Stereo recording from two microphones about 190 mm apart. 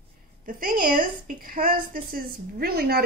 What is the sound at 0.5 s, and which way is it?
A woman's voice, 45° right (ahead or behind).